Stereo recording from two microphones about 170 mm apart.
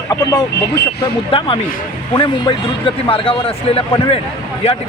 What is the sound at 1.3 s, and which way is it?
Speech, 30° left (ahead or behind).